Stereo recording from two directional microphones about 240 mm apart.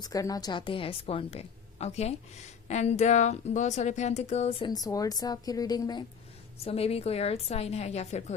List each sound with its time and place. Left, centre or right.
0.0 s speech: centre